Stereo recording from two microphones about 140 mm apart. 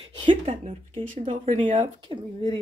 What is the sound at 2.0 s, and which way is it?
Speech, 35° right (ahead or behind).